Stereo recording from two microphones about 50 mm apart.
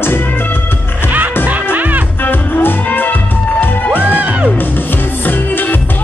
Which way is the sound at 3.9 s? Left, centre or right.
Right.